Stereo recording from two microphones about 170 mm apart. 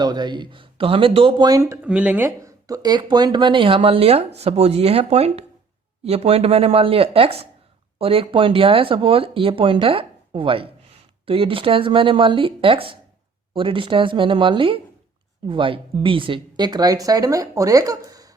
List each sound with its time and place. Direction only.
0.0 s speech: 25° right (ahead or behind)
1.8 s speech: 5° right (ahead or behind)